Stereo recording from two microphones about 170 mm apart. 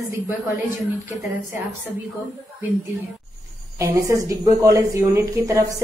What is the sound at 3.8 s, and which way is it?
A woman's voice, 20° right (ahead or behind).